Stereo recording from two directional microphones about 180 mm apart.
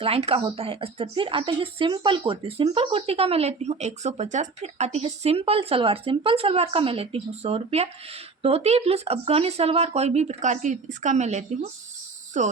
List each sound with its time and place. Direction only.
0.0 s speech: 35° right (ahead or behind)